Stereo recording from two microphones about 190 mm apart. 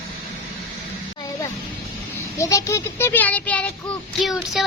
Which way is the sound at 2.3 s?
15° left (ahead or behind).